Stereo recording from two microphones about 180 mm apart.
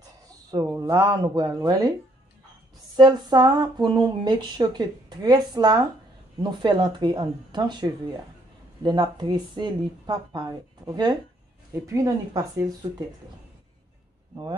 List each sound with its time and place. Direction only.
0.5 s speech: 20° right (ahead or behind)
3.0 s speech: 25° right (ahead or behind)